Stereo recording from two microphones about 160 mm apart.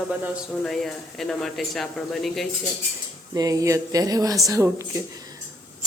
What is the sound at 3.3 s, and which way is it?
Speech, 20° right (ahead or behind).